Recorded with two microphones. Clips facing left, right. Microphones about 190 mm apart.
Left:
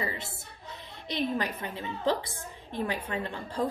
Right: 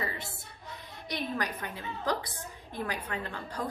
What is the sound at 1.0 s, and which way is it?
A woman's voice, 25° left (ahead or behind).